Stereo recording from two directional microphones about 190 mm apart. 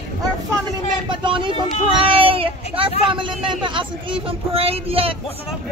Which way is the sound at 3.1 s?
25° right (ahead or behind).